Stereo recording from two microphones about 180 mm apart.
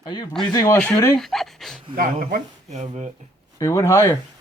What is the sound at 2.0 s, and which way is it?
Speech, 50° right (ahead or behind).